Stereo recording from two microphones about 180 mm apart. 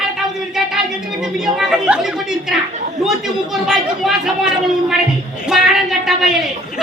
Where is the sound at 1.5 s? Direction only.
5° right (ahead or behind).